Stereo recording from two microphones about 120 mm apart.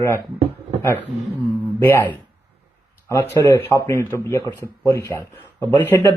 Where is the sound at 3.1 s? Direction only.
25° left (ahead or behind).